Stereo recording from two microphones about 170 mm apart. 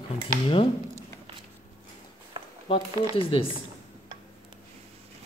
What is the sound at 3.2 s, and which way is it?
Speech, 30° left (ahead or behind).